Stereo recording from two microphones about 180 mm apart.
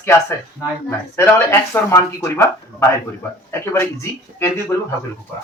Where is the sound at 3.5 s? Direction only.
15° left (ahead or behind).